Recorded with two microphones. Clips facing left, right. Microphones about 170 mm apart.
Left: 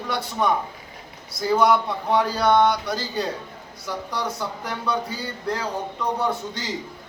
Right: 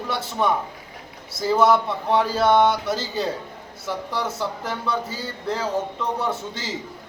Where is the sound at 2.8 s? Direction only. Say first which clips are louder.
Right 2 dB; centre (ahead or behind).